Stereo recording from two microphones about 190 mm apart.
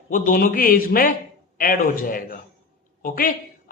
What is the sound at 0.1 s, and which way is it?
Speech, 45° left (ahead or behind).